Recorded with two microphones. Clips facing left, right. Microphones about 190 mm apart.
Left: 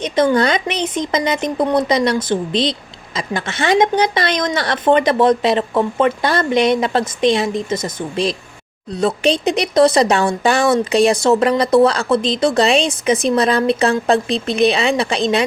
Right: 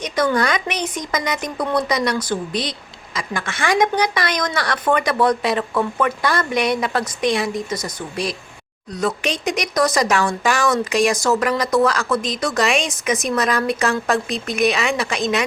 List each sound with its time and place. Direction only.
0.3 s a woman's voice: 25° left (ahead or behind)